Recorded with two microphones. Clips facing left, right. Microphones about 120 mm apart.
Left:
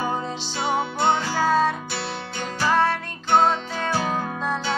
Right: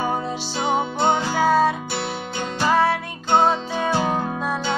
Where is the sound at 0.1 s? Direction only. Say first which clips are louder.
Right 3 dB; 15° right (ahead or behind).